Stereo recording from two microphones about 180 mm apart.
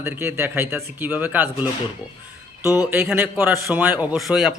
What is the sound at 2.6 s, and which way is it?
Speech, 20° left (ahead or behind).